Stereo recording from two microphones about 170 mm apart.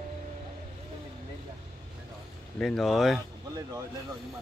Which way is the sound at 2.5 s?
Centre (ahead or behind).